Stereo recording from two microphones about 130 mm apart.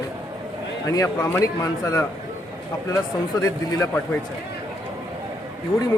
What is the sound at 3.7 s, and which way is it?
Speech, 25° left (ahead or behind).